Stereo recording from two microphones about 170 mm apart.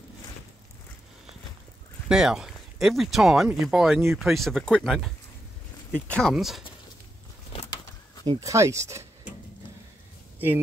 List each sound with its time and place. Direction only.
2.0 s speech: 5° right (ahead or behind)
8.3 s speech: 20° right (ahead or behind)